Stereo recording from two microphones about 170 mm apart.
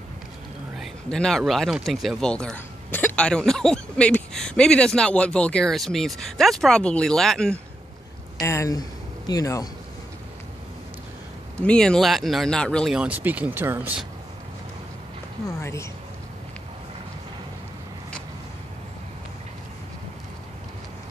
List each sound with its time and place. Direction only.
0.7 s speech: 5° left (ahead or behind)
8.4 s speech: 20° left (ahead or behind)
11.6 s speech: 5° left (ahead or behind)
15.6 s speech: 15° left (ahead or behind)